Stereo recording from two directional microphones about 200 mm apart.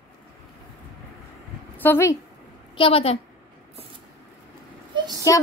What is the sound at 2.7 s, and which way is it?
Speech, 25° left (ahead or behind).